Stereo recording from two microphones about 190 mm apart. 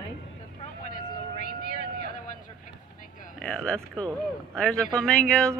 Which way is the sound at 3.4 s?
5° left (ahead or behind).